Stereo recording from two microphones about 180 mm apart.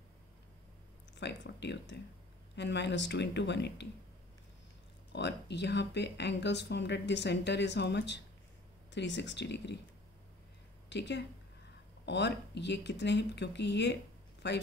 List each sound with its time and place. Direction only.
1.1 s speech: 75° left (ahead or behind)
5.1 s speech: 70° left (ahead or behind)
10.9 s speech: 75° left (ahead or behind)